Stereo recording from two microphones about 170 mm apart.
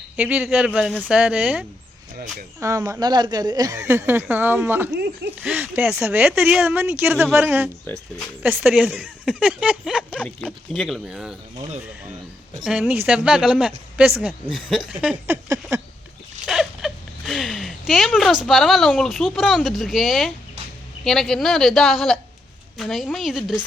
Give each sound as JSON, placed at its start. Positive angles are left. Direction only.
{"t": 0.2, "sound": "speech", "side_deg": -5}
{"t": 2.6, "sound": "speech", "side_deg": -20}
{"t": 12.6, "sound": "speech", "side_deg": -5}
{"t": 16.5, "sound": "speech", "side_deg": 0}